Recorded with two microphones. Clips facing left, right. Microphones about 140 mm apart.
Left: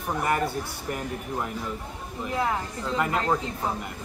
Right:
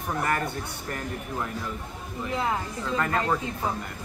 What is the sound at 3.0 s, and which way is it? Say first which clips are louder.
Speech: left 1 dB; 15° left (ahead or behind).